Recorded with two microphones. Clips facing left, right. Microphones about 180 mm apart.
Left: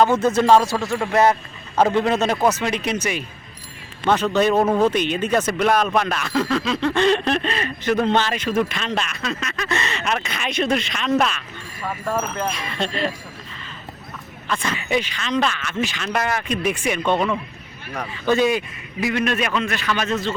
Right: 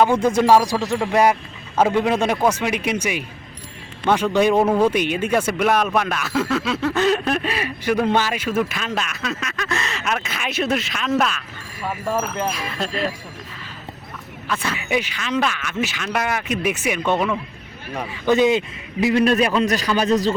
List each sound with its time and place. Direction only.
0.0 s a man's voice: 10° right (ahead or behind)
14.4 s a man's voice: 5° right (ahead or behind)
19.0 s a man's voice: 35° right (ahead or behind)